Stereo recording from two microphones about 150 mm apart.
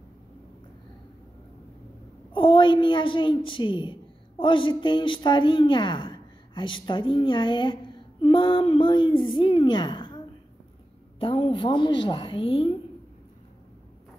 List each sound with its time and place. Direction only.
2.3 s a woman's voice: 35° left (ahead or behind)